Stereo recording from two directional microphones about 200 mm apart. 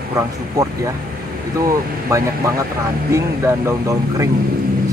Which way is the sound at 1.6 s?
15° right (ahead or behind).